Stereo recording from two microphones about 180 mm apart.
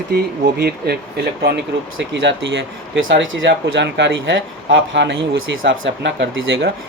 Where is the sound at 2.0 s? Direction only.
75° right (ahead or behind).